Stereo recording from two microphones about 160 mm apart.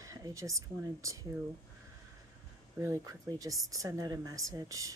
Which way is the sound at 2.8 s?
20° right (ahead or behind).